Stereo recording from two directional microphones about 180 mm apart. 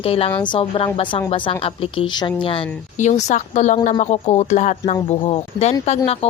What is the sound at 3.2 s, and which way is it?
A woman's voice, 40° left (ahead or behind).